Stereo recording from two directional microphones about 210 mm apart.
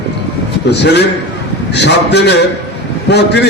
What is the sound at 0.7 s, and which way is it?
A man's voice, 50° left (ahead or behind).